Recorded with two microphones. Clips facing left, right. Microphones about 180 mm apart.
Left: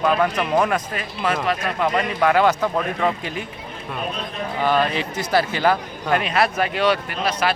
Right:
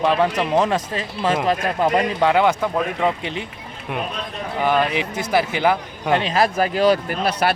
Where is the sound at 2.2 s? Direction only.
20° right (ahead or behind).